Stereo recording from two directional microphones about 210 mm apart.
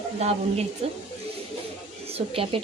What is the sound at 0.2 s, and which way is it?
Speech, 30° right (ahead or behind).